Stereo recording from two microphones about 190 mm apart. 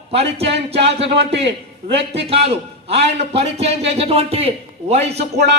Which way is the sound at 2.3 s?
30° right (ahead or behind).